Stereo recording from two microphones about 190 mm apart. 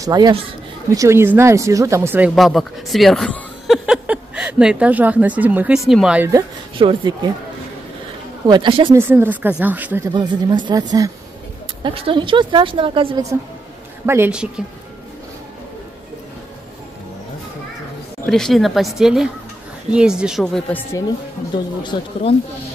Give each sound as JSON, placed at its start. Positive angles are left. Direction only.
{"t": 0.0, "sound": "a woman's voice", "side_deg": -20}
{"t": 6.8, "sound": "a woman's voice", "side_deg": -25}
{"t": 8.5, "sound": "a woman's voice", "side_deg": -25}
{"t": 8.9, "sound": "speech", "side_deg": -10}
{"t": 10.1, "sound": "a woman's voice", "side_deg": -25}
{"t": 18.2, "sound": "speech", "side_deg": 0}